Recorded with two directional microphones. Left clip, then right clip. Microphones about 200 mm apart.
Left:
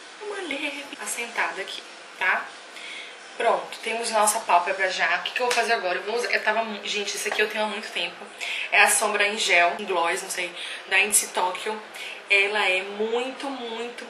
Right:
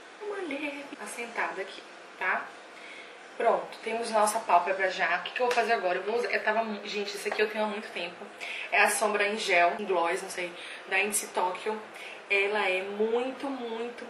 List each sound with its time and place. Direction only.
0.5 s speech: 5° right (ahead or behind)
11.7 s speech: 20° right (ahead or behind)
12.3 s speech: 10° right (ahead or behind)
13.5 s speech: 35° right (ahead or behind)